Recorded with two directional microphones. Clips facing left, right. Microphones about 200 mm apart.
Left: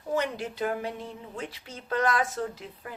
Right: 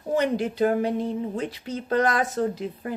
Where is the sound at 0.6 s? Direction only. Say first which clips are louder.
Right 8 dB; 40° right (ahead or behind).